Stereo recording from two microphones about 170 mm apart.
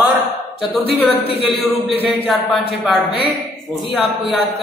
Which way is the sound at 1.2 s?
70° left (ahead or behind).